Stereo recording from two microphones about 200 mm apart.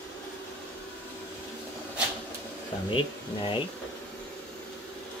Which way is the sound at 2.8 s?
25° left (ahead or behind).